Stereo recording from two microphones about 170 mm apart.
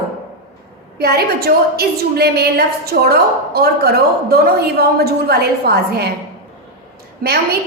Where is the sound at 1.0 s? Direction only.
65° right (ahead or behind).